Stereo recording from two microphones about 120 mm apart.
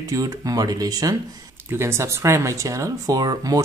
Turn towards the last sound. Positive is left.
turn(degrees=-30)  # may be behind; listen again after turning